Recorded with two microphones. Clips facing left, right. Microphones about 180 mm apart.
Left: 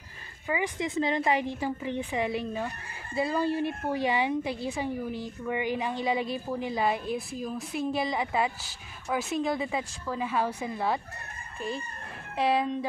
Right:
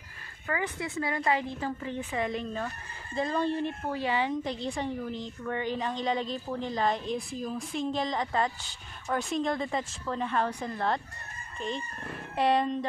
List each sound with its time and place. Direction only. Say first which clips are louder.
0.5 s a woman's voice: left 3 dB; 15° left (ahead or behind)
12.4 s speech: even; centre (ahead or behind)